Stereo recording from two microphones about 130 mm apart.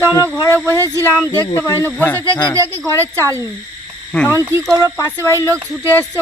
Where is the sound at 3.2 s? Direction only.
20° right (ahead or behind).